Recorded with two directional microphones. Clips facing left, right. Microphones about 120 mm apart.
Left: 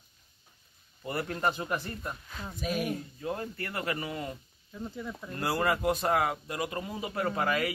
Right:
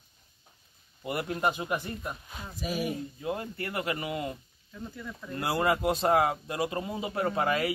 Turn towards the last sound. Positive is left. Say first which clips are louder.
# right 2 dB
turn(degrees=-25)  # may be behind; listen again after turning